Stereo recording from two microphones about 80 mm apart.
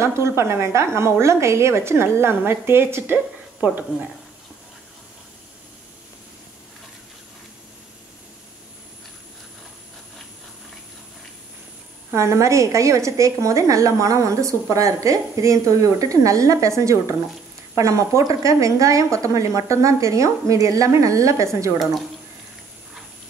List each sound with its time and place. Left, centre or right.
0.0 s a woman's voice: right
12.1 s a woman's voice: right